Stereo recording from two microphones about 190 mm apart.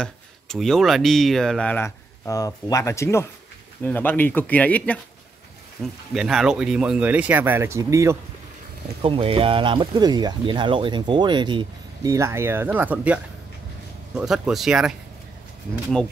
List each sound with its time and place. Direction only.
0.0 s speech: centre (ahead or behind); by 8.2 s 15° right (ahead or behind)
9.0 s speech: 30° right (ahead or behind); by 15.0 s centre (ahead or behind)